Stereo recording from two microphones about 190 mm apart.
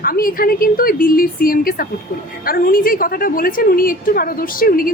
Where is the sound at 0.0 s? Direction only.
50° left (ahead or behind).